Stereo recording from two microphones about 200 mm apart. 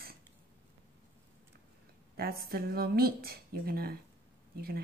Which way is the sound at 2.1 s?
50° right (ahead or behind).